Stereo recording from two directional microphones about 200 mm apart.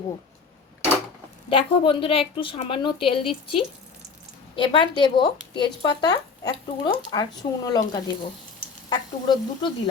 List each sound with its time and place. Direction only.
1.5 s speech: 25° left (ahead or behind)